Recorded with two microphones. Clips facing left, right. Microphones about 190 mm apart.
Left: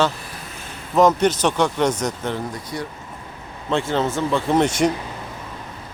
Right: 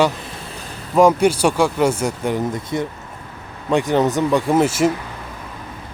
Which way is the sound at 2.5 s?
20° right (ahead or behind).